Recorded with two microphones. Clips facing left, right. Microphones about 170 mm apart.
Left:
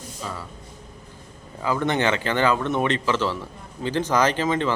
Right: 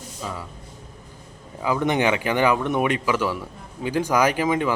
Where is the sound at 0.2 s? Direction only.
15° right (ahead or behind).